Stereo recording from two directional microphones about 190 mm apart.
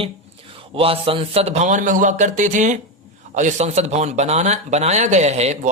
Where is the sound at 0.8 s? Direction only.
30° right (ahead or behind).